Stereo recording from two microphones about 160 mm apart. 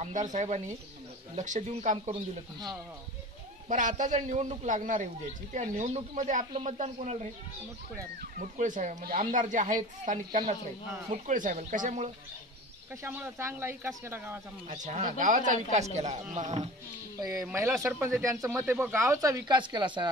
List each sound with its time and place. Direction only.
0.0 s a man's voice: 50° right (ahead or behind)
3.6 s a man's voice: 55° right (ahead or behind)
8.4 s a man's voice: 50° right (ahead or behind)
12.9 s speech: 10° right (ahead or behind)
14.7 s a man's voice: 45° right (ahead or behind)
17.2 s speech: 20° right (ahead or behind)